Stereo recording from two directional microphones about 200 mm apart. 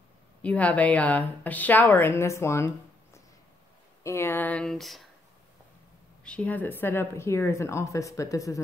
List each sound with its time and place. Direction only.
0.4 s a woman's voice: 5° left (ahead or behind)
4.0 s a woman's voice: 15° left (ahead or behind)
6.2 s a woman's voice: 5° left (ahead or behind)